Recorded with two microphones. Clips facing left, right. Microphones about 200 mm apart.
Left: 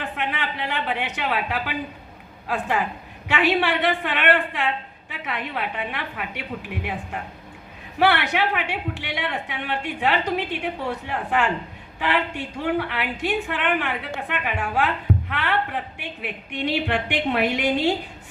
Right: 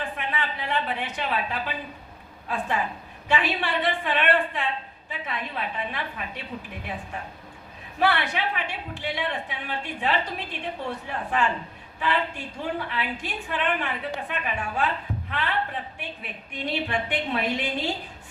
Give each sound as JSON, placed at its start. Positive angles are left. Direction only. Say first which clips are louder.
{"t": 0.0, "sound": "a woman's voice", "louder": "left 2 dB", "side_deg": 75}
{"t": 7.9, "sound": "a woman's voice", "louder": "left 4 dB", "side_deg": 75}